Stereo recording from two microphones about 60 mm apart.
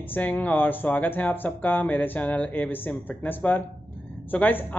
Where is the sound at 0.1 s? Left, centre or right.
Left.